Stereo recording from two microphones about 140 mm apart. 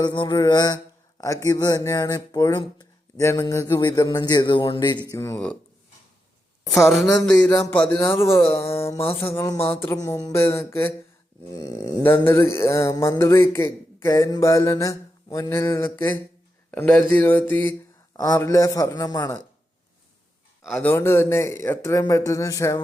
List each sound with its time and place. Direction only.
0.0 s a man's voice: 35° left (ahead or behind)
5.1 s a man's voice: 25° left (ahead or behind)
7.3 s speech: 10° left (ahead or behind)
8.4 s music: 20° left (ahead or behind)
9.1 s a man's voice: 20° left (ahead or behind)
20.7 s a man's voice: 10° left (ahead or behind)